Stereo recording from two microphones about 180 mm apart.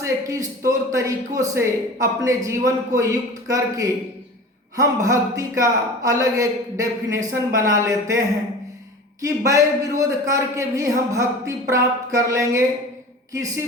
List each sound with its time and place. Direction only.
0.0 s a man's voice: 15° right (ahead or behind)
9.2 s a man's voice: 20° right (ahead or behind)